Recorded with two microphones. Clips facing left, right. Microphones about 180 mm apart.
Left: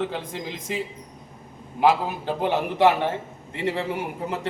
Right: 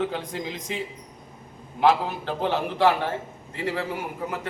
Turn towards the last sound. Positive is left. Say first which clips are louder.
# left 2 dB
turn(degrees=25)  # may be behind; listen again after turning